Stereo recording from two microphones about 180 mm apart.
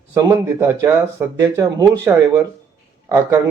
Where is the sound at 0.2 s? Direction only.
20° right (ahead or behind).